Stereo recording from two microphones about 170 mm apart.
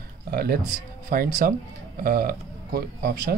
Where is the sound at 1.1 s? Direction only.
55° right (ahead or behind).